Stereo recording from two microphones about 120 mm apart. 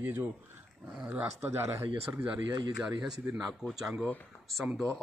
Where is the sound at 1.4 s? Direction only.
20° right (ahead or behind).